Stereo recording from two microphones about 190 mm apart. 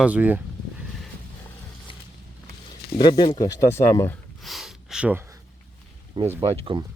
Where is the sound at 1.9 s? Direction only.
25° left (ahead or behind).